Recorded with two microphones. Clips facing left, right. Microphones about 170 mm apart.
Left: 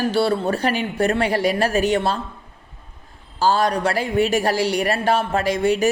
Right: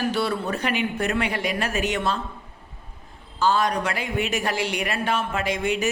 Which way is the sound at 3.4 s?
35° left (ahead or behind).